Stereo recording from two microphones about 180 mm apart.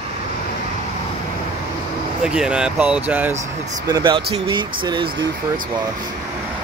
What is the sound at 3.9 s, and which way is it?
Speech, 25° right (ahead or behind).